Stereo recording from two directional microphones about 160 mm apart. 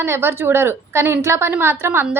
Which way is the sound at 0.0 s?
15° right (ahead or behind).